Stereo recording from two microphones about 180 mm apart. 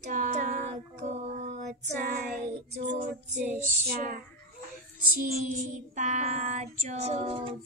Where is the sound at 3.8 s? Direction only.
50° right (ahead or behind).